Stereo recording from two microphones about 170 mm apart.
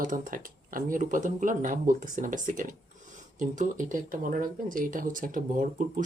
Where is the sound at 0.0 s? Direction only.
50° right (ahead or behind).